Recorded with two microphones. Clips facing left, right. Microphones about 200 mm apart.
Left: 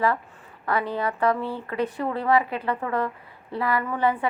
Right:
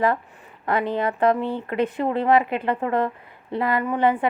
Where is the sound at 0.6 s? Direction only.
20° right (ahead or behind).